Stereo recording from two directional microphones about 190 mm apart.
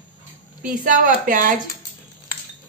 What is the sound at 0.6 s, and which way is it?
Speech, 45° right (ahead or behind).